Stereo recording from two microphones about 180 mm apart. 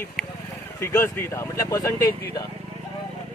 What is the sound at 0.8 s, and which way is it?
A man's voice, 15° left (ahead or behind).